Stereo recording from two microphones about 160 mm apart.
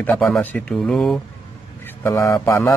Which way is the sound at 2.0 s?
15° left (ahead or behind).